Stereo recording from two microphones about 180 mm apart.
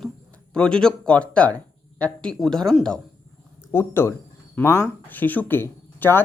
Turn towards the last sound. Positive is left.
turn(degrees=10)  # may be behind; listen again after turning